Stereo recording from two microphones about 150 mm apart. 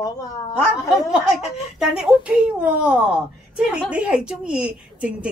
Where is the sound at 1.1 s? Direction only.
5° right (ahead or behind).